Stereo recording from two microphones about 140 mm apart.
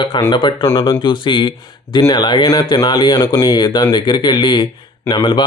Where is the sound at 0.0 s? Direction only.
35° left (ahead or behind).